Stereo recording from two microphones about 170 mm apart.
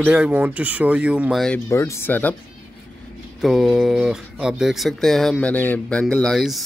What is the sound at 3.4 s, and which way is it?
Speech, centre (ahead or behind).